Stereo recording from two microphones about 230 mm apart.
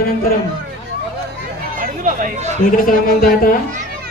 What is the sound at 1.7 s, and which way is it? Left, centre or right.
Chatter, right.